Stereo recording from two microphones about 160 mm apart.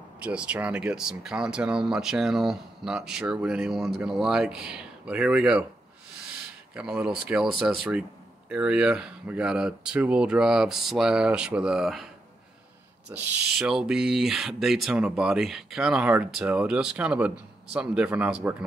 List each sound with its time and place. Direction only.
0.2 s speech: 5° right (ahead or behind)
6.7 s speech: 5° right (ahead or behind)
13.1 s speech: 15° right (ahead or behind)
13.6 s speech: 5° right (ahead or behind)